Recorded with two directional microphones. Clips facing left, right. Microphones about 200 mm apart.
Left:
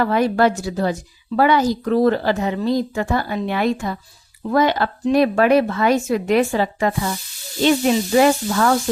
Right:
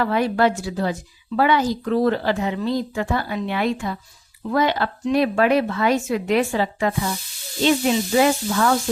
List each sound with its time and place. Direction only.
0.0 s speech: 45° left (ahead or behind)